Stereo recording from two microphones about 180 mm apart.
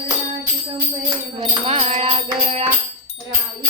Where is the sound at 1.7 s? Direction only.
35° right (ahead or behind).